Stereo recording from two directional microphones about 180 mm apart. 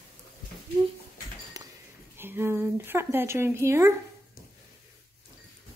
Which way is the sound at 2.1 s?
10° right (ahead or behind).